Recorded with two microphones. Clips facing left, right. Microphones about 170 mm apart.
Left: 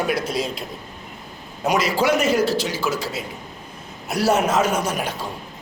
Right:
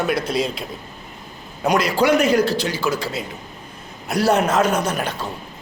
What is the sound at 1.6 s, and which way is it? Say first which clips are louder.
A man's voice: right 2 dB; 5° left (ahead or behind).